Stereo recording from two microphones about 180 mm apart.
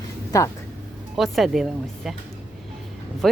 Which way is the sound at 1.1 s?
Centre (ahead or behind).